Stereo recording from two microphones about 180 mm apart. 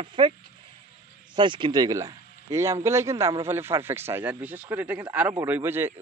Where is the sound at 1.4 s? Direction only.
25° right (ahead or behind).